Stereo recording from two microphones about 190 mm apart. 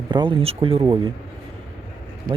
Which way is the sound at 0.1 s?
25° right (ahead or behind).